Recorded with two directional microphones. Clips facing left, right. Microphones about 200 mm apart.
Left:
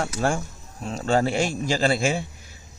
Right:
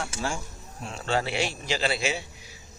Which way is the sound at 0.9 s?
45° left (ahead or behind).